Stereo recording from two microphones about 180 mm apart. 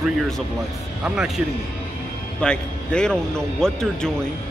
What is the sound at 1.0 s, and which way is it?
Speech, 5° right (ahead or behind).